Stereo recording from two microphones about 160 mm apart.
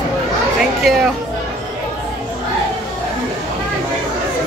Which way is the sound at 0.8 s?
Centre (ahead or behind).